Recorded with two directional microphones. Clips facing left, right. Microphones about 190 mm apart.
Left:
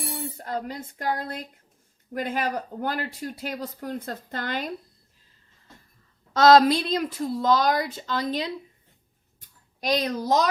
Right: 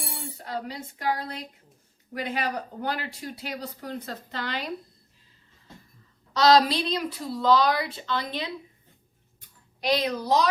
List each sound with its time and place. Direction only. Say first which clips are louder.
0.4 s speech: even; 50° left (ahead or behind)
6.3 s speech: left 3 dB; 50° left (ahead or behind)
9.9 s speech: left 1 dB; 45° left (ahead or behind)